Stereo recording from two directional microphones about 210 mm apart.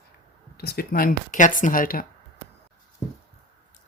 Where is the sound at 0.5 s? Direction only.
45° left (ahead or behind).